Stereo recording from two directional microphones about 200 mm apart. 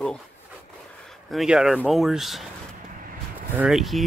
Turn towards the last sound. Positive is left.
turn(degrees=0)  # may be behind; listen again after turning